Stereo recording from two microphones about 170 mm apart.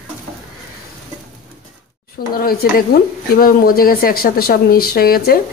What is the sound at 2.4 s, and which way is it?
Speech, 60° left (ahead or behind).